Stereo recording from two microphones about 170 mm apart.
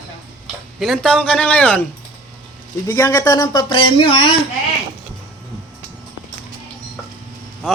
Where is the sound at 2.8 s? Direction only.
20° left (ahead or behind).